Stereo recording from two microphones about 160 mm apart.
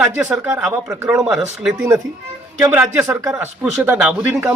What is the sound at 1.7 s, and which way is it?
Speech, 20° right (ahead or behind).